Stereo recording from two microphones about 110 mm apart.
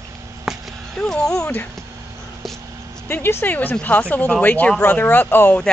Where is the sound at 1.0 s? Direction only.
5° left (ahead or behind).